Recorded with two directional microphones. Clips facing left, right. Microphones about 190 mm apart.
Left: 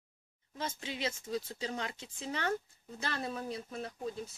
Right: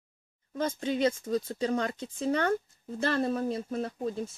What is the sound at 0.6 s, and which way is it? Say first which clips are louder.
Speech: right 11 dB; 50° right (ahead or behind).